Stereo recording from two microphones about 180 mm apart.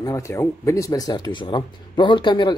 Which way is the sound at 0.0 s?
15° left (ahead or behind).